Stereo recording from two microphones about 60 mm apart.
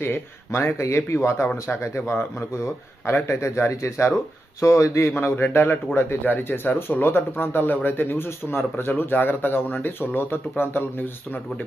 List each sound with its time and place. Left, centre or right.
0.0 s speech: left
5.2 s speech: left